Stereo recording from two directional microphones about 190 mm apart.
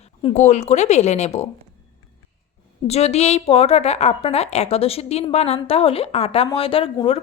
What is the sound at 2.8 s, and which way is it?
A woman's voice, 35° left (ahead or behind).